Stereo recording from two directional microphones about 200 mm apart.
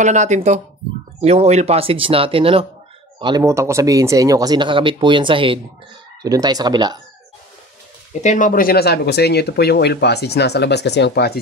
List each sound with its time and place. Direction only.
0.0 s speech: 35° right (ahead or behind); by 7.0 s 20° right (ahead or behind)
8.1 s speech: 35° left (ahead or behind); by 11.3 s 55° left (ahead or behind)